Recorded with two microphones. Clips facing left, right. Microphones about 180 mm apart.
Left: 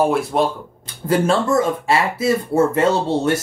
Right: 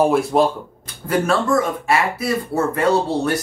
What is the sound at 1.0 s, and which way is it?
Speech, 25° left (ahead or behind).